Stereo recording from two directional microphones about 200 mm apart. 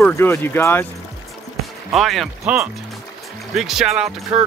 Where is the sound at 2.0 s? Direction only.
Centre (ahead or behind).